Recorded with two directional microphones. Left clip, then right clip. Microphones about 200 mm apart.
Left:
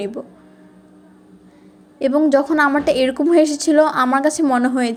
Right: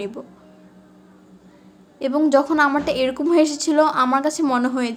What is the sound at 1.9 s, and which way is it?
A woman's voice, 15° left (ahead or behind).